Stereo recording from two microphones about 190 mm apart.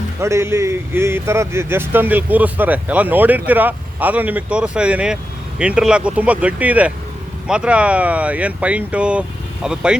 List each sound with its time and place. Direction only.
0.2 s speech: 15° right (ahead or behind)